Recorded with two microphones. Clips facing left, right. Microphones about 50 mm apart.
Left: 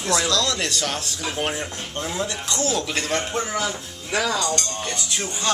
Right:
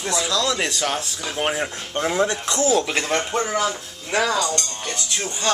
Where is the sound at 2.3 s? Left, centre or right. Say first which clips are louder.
Right 5 dB; centre.